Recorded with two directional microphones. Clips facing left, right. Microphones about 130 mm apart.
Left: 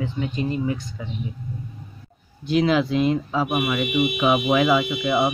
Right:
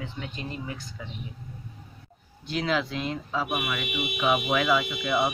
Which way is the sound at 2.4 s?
10° left (ahead or behind).